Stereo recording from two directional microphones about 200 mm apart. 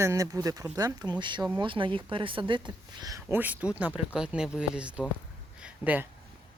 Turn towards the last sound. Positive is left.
turn(degrees=-10)  # may be behind; listen again after turning